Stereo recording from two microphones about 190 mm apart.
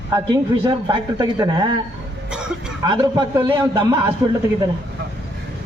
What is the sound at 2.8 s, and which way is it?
Speech, 20° right (ahead or behind).